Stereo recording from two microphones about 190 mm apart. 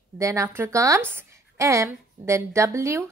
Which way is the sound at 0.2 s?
15° right (ahead or behind).